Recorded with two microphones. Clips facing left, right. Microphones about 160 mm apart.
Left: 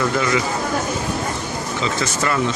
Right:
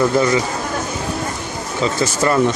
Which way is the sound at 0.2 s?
35° right (ahead or behind).